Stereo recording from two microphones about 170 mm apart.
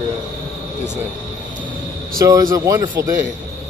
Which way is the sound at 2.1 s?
20° right (ahead or behind).